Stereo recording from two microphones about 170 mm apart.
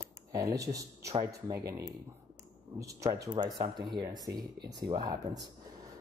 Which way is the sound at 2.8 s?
20° right (ahead or behind).